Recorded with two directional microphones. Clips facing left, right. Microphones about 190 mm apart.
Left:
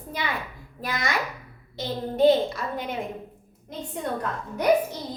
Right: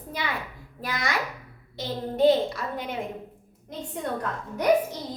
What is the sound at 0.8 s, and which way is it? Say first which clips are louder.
A child's voice: left 1 dB; 20° left (ahead or behind).